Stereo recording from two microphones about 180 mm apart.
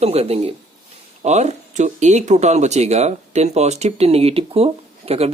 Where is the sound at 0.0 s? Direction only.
35° right (ahead or behind).